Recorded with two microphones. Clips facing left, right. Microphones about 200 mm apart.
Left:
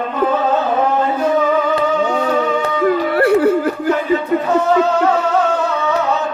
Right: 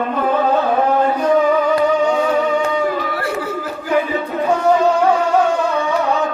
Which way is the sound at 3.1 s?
60° left (ahead or behind).